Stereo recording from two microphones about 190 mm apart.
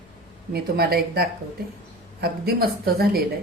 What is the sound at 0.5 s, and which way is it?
Speech, 55° right (ahead or behind).